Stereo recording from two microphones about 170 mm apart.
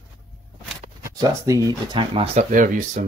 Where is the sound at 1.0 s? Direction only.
20° right (ahead or behind).